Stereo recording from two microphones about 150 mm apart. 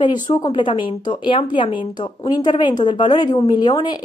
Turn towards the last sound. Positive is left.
turn(degrees=30)  # may be behind; listen again after turning